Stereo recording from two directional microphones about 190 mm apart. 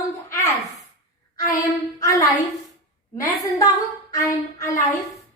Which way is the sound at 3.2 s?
15° left (ahead or behind).